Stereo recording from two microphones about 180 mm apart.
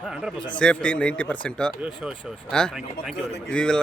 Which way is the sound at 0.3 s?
25° left (ahead or behind).